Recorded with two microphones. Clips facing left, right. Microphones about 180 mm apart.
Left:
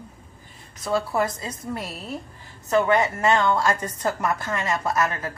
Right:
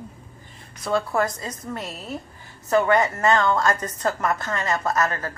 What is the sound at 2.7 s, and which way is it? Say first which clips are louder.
A woman's voice: right 1 dB; 5° left (ahead or behind).